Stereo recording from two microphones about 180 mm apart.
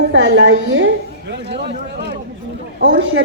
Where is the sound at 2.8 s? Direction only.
85° right.